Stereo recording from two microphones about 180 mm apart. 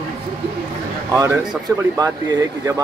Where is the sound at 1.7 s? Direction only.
15° right (ahead or behind).